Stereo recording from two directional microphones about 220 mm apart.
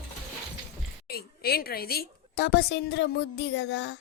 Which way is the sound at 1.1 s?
45° left (ahead or behind).